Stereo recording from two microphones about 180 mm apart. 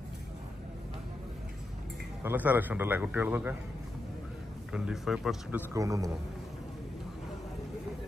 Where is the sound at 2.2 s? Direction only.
10° right (ahead or behind).